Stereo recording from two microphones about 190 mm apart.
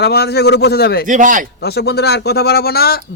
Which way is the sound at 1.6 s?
55° left (ahead or behind).